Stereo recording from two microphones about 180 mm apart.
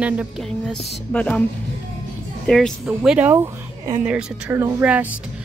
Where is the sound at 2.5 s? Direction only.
5° left (ahead or behind); by 3.9 s 15° right (ahead or behind).